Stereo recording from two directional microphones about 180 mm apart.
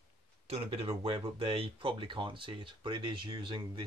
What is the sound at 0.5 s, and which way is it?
Speech, 30° right (ahead or behind).